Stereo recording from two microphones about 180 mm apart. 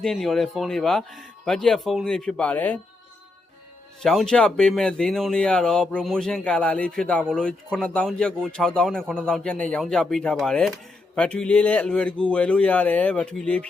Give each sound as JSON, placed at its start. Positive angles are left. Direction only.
{"t": 0.0, "sound": "speech", "side_deg": 0}
{"t": 4.0, "sound": "speech", "side_deg": 0}